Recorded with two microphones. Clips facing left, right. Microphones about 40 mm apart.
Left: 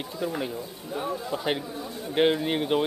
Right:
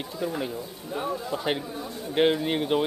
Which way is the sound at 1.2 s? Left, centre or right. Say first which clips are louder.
Even; centre.